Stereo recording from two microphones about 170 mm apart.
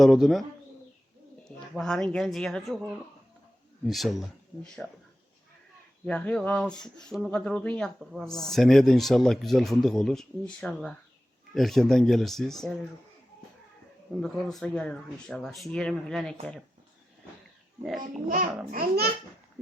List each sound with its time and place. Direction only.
0.0 s speech: centre (ahead or behind)
1.5 s a woman's voice: 5° left (ahead or behind)
3.8 s speech: centre (ahead or behind)
6.1 s speech: 5° left (ahead or behind)
14.1 s speech: centre (ahead or behind)
17.8 s speech: centre (ahead or behind)
18.7 s a child's voice: 60° right (ahead or behind)